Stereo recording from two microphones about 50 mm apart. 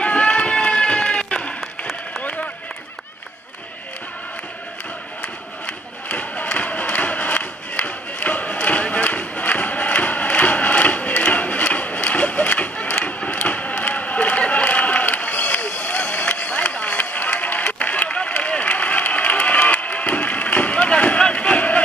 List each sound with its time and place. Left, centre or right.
0.0 s run: left
6.0 s crowd: left
21.2 s a sound: left